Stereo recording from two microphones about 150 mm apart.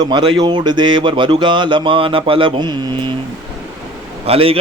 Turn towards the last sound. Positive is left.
turn(degrees=-40)  # may be behind; listen again after turning